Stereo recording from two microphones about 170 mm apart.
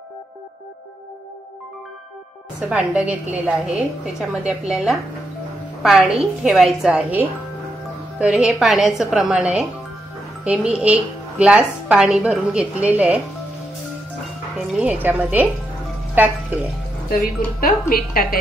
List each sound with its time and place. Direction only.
2.7 s a woman's voice: 10° right (ahead or behind)
14.7 s a woman's voice: 10° right (ahead or behind)
17.6 s a woman's voice: 60° left (ahead or behind)